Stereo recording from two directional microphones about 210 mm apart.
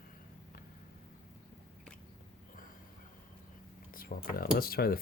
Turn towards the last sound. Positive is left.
turn(degrees=45)  # may be behind; listen again after turning